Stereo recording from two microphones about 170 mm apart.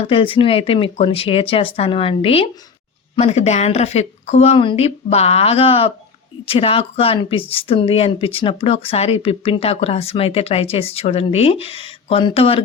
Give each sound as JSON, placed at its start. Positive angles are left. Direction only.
{"t": 0.1, "sound": "speech", "side_deg": 35}